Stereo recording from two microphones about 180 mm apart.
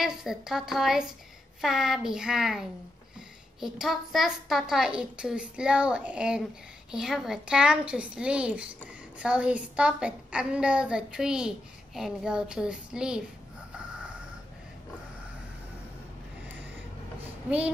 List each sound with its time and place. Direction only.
0.0 s a woman's voice: centre (ahead or behind)
3.6 s a woman's voice: centre (ahead or behind)
17.5 s speech: 10° right (ahead or behind)